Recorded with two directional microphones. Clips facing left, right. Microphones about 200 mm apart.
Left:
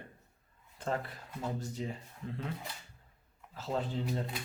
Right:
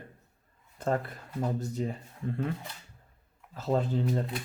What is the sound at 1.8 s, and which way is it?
Speech, 45° right (ahead or behind).